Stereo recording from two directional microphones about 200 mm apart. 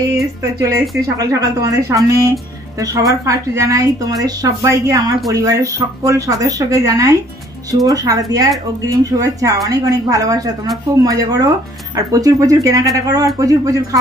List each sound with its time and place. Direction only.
0.4 s speech: 15° right (ahead or behind)